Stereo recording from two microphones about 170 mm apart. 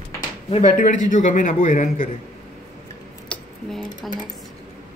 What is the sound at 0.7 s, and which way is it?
Speech, 50° left (ahead or behind).